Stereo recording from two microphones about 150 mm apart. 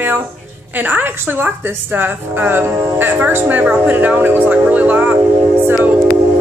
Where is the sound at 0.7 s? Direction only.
15° right (ahead or behind).